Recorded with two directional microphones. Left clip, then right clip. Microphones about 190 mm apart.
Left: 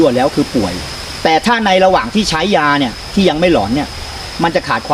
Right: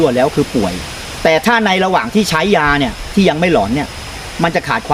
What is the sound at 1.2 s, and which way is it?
Speech, 15° right (ahead or behind).